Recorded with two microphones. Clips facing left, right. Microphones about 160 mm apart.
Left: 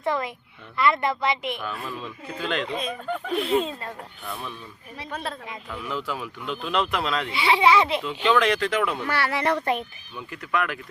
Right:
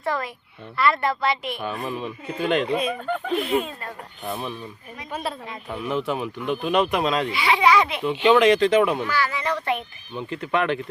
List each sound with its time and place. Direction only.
0.0 s a woman's voice: 20° left (ahead or behind)
1.5 s speech: 20° right (ahead or behind)
3.5 s a woman's voice: 25° left (ahead or behind)
4.2 s speech: 20° right (ahead or behind)
5.6 s speech: 25° right (ahead or behind)
7.3 s a woman's voice: 30° left (ahead or behind)
8.0 s speech: 15° right (ahead or behind)
9.0 s speech: 65° left (ahead or behind)
10.2 s speech: 25° right (ahead or behind)